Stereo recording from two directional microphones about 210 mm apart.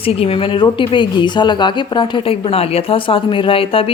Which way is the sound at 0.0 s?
25° left (ahead or behind).